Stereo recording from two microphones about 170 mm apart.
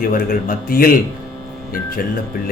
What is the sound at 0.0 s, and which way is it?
Speech, 60° left (ahead or behind).